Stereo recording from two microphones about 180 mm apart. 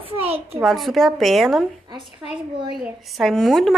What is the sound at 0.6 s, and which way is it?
A woman's voice, centre (ahead or behind).